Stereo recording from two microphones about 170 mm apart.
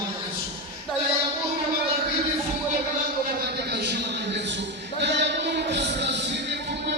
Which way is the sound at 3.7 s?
80° right.